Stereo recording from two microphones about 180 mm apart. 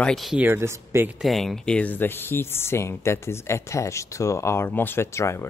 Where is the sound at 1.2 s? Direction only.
Centre (ahead or behind); by 5.5 s 15° left (ahead or behind).